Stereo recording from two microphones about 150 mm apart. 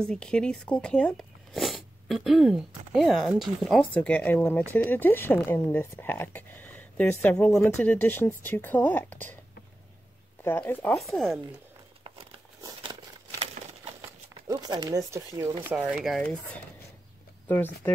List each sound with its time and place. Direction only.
0.0 s speech: 5° left (ahead or behind)
3.9 s speech: 10° left (ahead or behind)
10.4 s speech: 15° left (ahead or behind)
11.0 s speech: centre (ahead or behind)
12.0 s crumpling: 35° right (ahead or behind)
14.5 s speech: 25° right (ahead or behind)
15.6 s speech: 10° right (ahead or behind)